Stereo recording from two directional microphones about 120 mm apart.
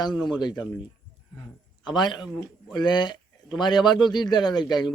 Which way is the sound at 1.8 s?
40° left (ahead or behind).